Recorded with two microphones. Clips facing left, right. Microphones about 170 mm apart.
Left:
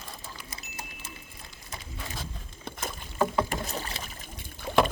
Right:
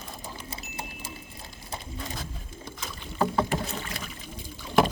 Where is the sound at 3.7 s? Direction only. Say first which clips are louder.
Even; 40° left (ahead or behind).